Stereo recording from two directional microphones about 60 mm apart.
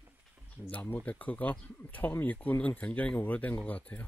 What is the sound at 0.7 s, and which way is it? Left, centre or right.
Speech, left.